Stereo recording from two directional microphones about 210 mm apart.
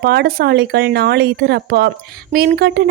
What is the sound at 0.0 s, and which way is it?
Speech, 50° right (ahead or behind).